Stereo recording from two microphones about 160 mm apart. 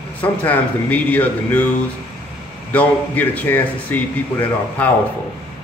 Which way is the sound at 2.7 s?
10° left (ahead or behind).